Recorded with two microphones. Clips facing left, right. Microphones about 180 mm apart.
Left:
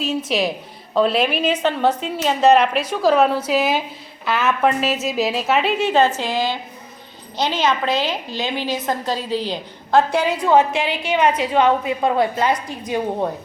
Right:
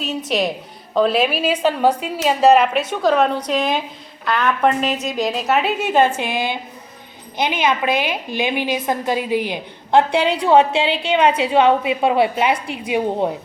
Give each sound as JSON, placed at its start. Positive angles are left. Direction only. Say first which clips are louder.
{"t": 0.0, "sound": "a woman's voice", "louder": "even", "side_deg": 0}